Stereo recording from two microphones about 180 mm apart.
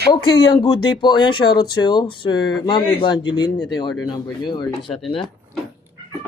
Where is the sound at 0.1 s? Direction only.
25° left (ahead or behind).